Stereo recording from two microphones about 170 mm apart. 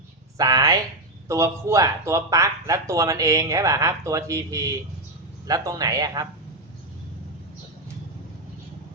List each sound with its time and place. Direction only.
0.3 s speech: 20° right (ahead or behind)